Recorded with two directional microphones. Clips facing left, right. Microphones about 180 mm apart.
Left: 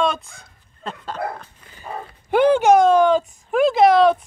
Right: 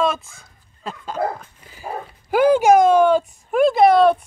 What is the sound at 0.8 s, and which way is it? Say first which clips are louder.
Dog: right 3 dB; 5° right (ahead or behind).